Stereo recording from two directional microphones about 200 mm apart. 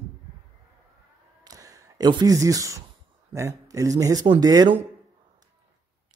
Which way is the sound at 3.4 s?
15° right (ahead or behind).